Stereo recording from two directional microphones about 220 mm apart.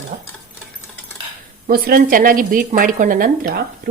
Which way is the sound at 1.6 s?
45° right (ahead or behind).